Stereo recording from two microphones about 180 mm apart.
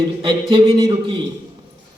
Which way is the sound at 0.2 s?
25° right (ahead or behind).